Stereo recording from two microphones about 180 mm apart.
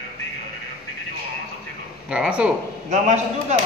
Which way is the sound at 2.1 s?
5° right (ahead or behind).